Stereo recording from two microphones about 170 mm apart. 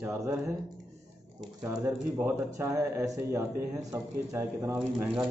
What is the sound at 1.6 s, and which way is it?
A man's voice, 15° right (ahead or behind).